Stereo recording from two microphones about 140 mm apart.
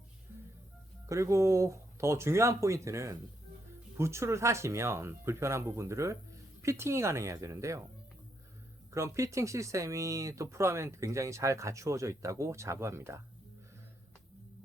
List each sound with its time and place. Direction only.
1.0 s speech: 20° right (ahead or behind)
8.9 s speech: 20° right (ahead or behind)